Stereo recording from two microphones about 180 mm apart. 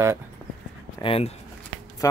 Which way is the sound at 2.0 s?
20° left (ahead or behind).